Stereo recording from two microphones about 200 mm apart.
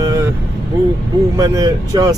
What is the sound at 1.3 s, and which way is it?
Speech, 15° right (ahead or behind).